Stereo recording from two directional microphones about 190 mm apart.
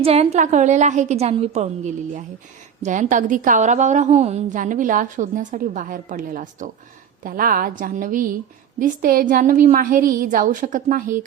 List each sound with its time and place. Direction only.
0.0 s a woman's voice: 30° right (ahead or behind)